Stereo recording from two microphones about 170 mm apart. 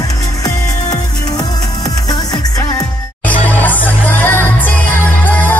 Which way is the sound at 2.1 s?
20° left (ahead or behind).